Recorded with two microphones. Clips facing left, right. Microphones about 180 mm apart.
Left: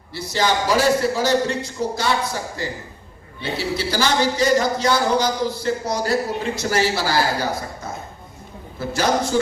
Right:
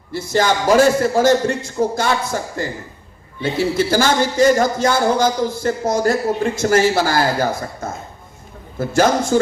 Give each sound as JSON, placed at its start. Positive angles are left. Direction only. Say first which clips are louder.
{"t": 0.1, "sound": "speech", "louder": "right 4 dB", "side_deg": -50}